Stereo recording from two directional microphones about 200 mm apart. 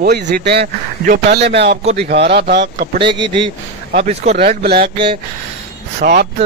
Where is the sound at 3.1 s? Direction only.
25° right (ahead or behind).